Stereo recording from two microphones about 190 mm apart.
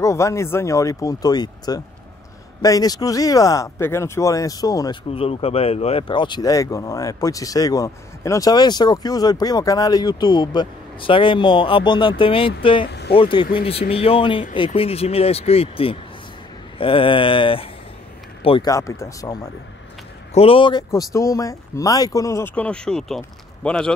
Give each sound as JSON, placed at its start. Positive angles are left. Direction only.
{"t": 0.0, "sound": "speech", "side_deg": 15}
{"t": 20.3, "sound": "speech", "side_deg": 30}